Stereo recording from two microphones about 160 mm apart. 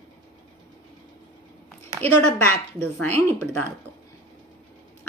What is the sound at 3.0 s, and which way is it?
Speech, 10° left (ahead or behind).